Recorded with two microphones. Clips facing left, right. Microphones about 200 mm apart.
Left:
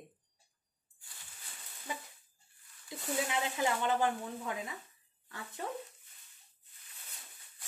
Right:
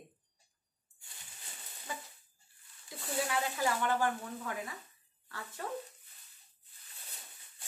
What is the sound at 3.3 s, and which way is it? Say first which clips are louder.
Speech: right 1 dB; 20° left (ahead or behind).